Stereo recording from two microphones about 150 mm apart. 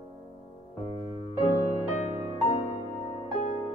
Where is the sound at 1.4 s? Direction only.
40° left (ahead or behind).